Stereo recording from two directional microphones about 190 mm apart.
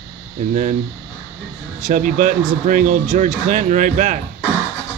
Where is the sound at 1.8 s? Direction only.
45° right (ahead or behind).